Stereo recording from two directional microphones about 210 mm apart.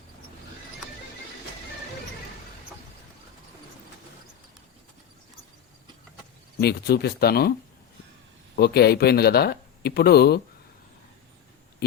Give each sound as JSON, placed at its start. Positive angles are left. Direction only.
{"t": 6.6, "sound": "speech", "side_deg": 50}
{"t": 8.5, "sound": "speech", "side_deg": 50}